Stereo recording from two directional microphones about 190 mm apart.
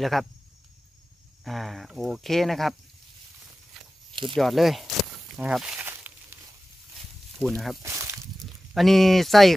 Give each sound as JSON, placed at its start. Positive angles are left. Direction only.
{"t": 0.0, "sound": "speech", "side_deg": 0}
{"t": 1.4, "sound": "speech", "side_deg": 0}
{"t": 3.8, "sound": "snake", "side_deg": 0}
{"t": 4.1, "sound": "snake", "side_deg": -25}
{"t": 4.4, "sound": "a sound", "side_deg": 0}
{"t": 7.3, "sound": "speech", "side_deg": 0}
{"t": 7.8, "sound": "a sound", "side_deg": -15}
{"t": 8.4, "sound": "speech", "side_deg": 0}